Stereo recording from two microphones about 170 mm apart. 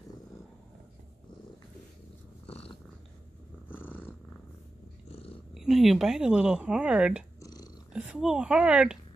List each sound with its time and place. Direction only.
2.4 s purr: 35° left (ahead or behind)
3.7 s purr: 10° left (ahead or behind)
5.0 s purr: 35° left (ahead or behind)
5.5 s speech: centre (ahead or behind)
7.4 s cat: 20° left (ahead or behind)
7.9 s speech: 5° right (ahead or behind)